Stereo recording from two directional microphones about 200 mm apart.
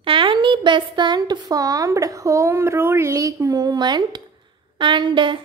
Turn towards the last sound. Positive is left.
turn(degrees=-25)  # may be behind; listen again after turning